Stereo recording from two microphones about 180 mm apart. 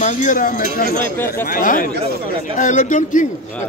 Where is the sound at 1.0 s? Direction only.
10° left (ahead or behind).